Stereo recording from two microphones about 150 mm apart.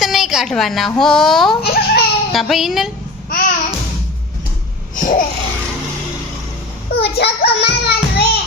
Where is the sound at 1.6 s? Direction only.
90° left.